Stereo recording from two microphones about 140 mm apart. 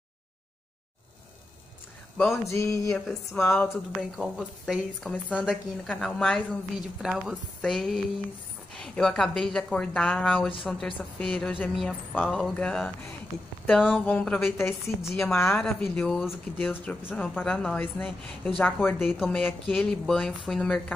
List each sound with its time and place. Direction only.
2.3 s a sound: 20° left (ahead or behind)
3.3 s speech: 15° left (ahead or behind)
4.2 s speech: centre (ahead or behind)
14.6 s speech: 15° left (ahead or behind)
15.6 s speech: 5° left (ahead or behind)